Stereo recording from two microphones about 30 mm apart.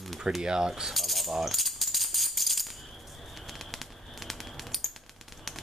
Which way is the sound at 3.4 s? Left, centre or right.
Centre.